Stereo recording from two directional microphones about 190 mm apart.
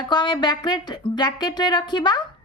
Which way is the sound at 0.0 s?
25° left (ahead or behind).